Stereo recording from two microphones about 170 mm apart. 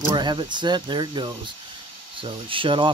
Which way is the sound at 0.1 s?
25° right (ahead or behind).